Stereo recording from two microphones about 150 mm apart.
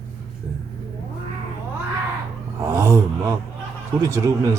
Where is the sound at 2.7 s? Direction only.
20° right (ahead or behind).